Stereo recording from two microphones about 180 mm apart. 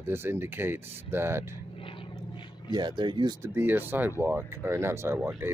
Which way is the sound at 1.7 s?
30° left (ahead or behind).